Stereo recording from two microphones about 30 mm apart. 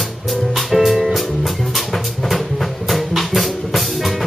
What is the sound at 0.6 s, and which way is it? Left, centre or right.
Music, centre.